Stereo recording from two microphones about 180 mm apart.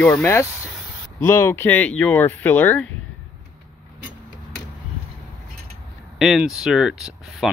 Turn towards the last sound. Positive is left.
turn(degrees=-5)  # may be behind; listen again after turning